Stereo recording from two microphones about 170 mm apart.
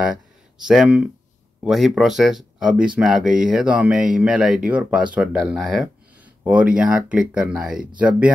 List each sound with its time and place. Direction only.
0.6 s speech: 5° right (ahead or behind)